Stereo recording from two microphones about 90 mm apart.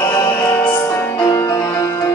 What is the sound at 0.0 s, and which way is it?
Music, 35° left (ahead or behind).